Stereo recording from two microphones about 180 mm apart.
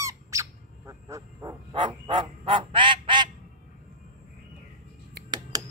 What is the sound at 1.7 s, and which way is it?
Honk, 25° right (ahead or behind).